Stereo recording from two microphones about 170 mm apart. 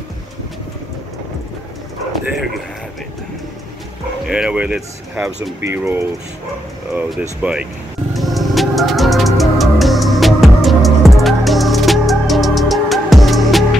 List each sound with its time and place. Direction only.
4.3 s speech: 5° right (ahead or behind)
8.1 s music: centre (ahead or behind)